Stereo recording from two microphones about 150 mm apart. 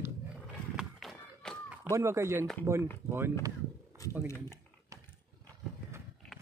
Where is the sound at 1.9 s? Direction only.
20° right (ahead or behind).